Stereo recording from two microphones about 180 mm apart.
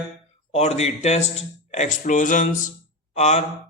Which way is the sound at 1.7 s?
45° left (ahead or behind).